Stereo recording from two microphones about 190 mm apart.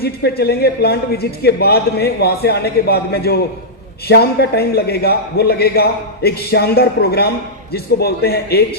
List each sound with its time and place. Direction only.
0.0 s a man's voice: 55° left (ahead or behind)